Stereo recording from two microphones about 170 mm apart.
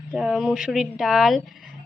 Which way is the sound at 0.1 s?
5° right (ahead or behind).